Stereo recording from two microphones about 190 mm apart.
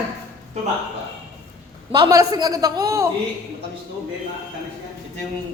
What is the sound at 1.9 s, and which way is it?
A woman's voice, 20° right (ahead or behind).